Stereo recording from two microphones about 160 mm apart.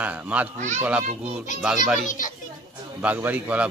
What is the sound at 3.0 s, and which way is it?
Speech, 10° right (ahead or behind).